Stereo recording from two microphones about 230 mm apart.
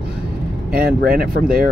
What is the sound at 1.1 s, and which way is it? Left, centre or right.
Speech, right.